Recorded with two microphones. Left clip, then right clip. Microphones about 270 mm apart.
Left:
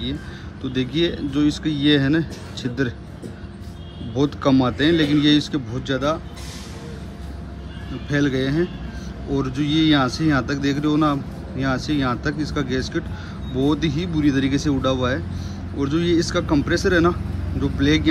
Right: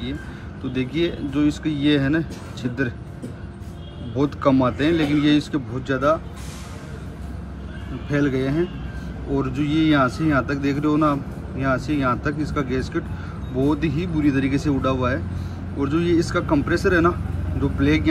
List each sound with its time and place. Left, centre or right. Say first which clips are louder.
0.7 s speech: left 2 dB; centre
4.1 s speech: even; centre
8.1 s speech: left 1 dB; centre